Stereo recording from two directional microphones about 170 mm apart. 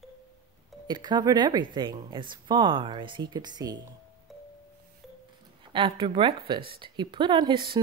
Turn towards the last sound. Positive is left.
turn(degrees=-30)  # may be behind; listen again after turning